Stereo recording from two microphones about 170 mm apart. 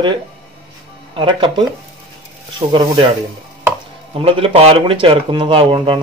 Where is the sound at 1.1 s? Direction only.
30° right (ahead or behind).